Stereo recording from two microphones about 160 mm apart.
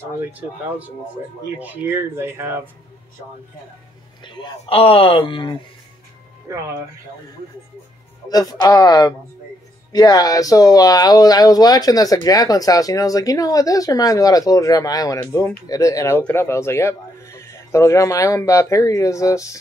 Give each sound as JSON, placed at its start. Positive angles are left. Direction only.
{"t": 0.0, "sound": "speech", "side_deg": -10}
{"t": 4.2, "sound": "speech", "side_deg": 30}
{"t": 8.3, "sound": "speech", "side_deg": 25}